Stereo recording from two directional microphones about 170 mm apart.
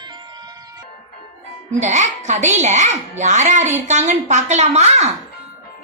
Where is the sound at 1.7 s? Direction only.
45° right (ahead or behind).